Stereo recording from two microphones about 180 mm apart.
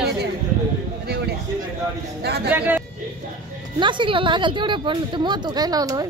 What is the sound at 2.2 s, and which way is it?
Speech, 65° right (ahead or behind).